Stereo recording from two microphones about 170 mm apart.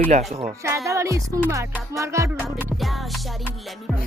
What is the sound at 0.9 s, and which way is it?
Speech, 15° right (ahead or behind).